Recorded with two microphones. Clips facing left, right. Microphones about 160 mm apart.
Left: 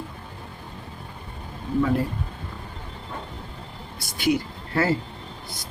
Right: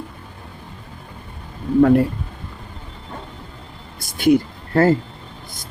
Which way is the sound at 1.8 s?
60° right (ahead or behind).